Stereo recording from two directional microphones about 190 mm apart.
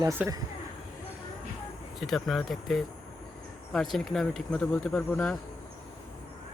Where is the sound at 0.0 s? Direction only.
15° right (ahead or behind).